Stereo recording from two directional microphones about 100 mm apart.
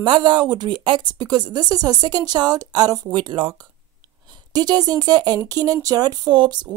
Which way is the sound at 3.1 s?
55° right (ahead or behind).